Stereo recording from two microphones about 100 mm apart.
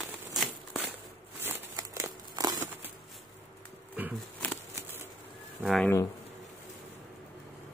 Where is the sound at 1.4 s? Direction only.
20° right (ahead or behind).